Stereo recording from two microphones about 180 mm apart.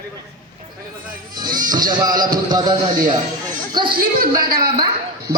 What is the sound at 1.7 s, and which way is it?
A man's voice, 25° right (ahead or behind).